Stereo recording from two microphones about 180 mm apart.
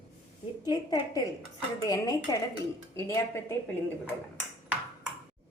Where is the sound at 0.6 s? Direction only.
20° left (ahead or behind).